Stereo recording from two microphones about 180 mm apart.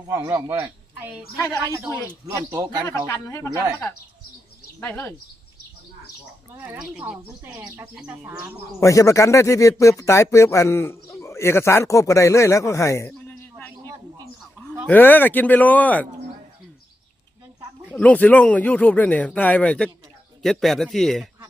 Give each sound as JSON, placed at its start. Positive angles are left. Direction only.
{"t": 0.1, "sound": "speech", "side_deg": -15}
{"t": 2.5, "sound": "speech", "side_deg": -20}
{"t": 3.1, "sound": "speech", "side_deg": 15}
{"t": 4.8, "sound": "speech", "side_deg": 10}
{"t": 6.6, "sound": "speech", "side_deg": -5}
{"t": 8.8, "sound": "a man's voice", "side_deg": 15}
{"t": 14.8, "sound": "speech", "side_deg": 10}
{"t": 17.9, "sound": "speech", "side_deg": 5}